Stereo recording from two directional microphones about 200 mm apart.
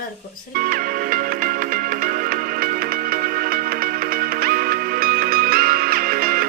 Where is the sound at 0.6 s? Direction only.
45° right (ahead or behind).